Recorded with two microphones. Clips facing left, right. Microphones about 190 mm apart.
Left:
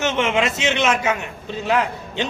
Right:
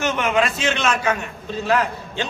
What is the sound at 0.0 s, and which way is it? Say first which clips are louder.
A man's voice: even; 25° left (ahead or behind).